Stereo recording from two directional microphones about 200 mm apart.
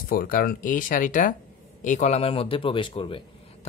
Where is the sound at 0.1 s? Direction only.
45° left (ahead or behind).